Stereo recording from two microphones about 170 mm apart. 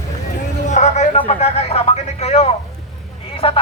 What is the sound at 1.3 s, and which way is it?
A man's voice, 40° left (ahead or behind).